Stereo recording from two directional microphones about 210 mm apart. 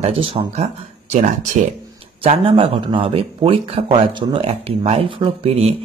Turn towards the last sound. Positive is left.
turn(degrees=-30)  # may be behind; listen again after turning